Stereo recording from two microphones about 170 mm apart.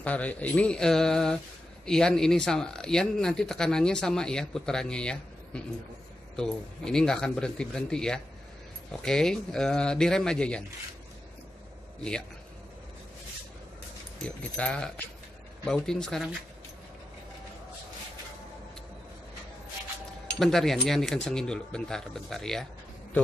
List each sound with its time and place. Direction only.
0.0 s speech: 10° left (ahead or behind)
14.2 s speech: 5° left (ahead or behind)
20.3 s speech: centre (ahead or behind)